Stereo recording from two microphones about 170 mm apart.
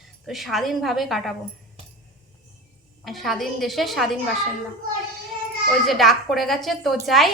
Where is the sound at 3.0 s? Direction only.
Centre (ahead or behind).